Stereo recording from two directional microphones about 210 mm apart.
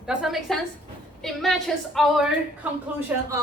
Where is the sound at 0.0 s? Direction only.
5° right (ahead or behind).